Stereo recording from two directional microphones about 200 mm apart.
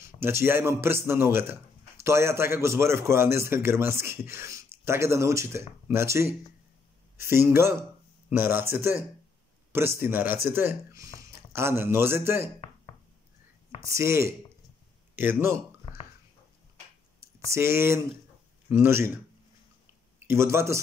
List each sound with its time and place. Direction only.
0.0 s a man's voice: 10° right (ahead or behind)
12.5 s chopping: 30° left (ahead or behind)
13.8 s a man's voice: 15° right (ahead or behind)
17.2 s a man's voice: 15° right (ahead or behind)
20.2 s a man's voice: 15° right (ahead or behind)